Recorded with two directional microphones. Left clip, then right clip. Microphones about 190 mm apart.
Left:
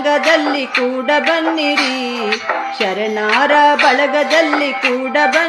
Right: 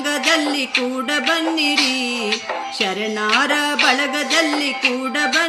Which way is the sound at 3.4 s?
45° right (ahead or behind).